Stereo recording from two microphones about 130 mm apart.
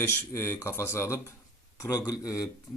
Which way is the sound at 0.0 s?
20° left (ahead or behind).